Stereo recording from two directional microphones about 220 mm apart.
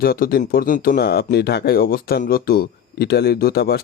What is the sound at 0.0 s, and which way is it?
Speech, 40° left (ahead or behind).